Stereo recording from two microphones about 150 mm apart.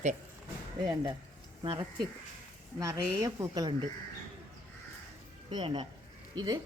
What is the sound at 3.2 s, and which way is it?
Speech, 25° right (ahead or behind).